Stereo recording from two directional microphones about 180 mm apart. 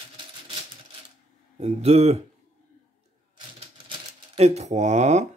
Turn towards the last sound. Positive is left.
turn(degrees=-40)  # may be behind; listen again after turning